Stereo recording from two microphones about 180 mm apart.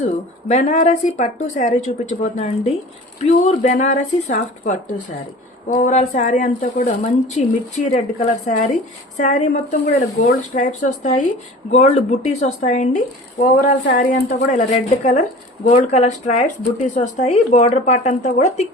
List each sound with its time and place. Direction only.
0.4 s speech: 40° left (ahead or behind)
13.8 s speech: 65° left (ahead or behind)
14.3 s speech: 40° left (ahead or behind)